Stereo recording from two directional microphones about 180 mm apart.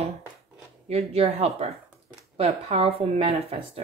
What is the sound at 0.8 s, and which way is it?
Speech, 35° right (ahead or behind).